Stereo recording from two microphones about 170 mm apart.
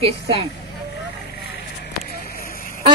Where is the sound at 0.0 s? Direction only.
35° right (ahead or behind).